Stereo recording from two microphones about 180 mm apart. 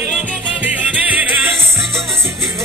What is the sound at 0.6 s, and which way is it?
Music, 10° right (ahead or behind).